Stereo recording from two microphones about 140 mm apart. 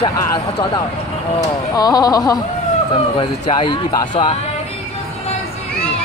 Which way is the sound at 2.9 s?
40° left (ahead or behind).